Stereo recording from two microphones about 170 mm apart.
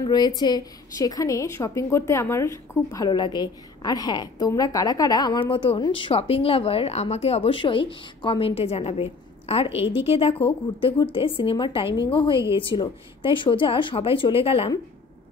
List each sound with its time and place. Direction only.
0.0 s a woman's voice: 25° left (ahead or behind)